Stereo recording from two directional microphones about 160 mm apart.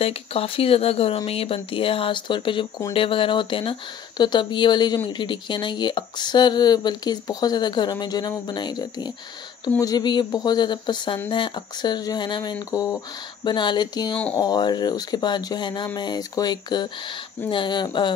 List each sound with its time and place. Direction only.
0.0 s speech: 35° left (ahead or behind)